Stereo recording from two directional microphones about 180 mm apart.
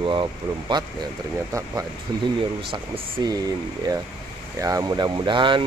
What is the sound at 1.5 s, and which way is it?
Speech, 20° right (ahead or behind).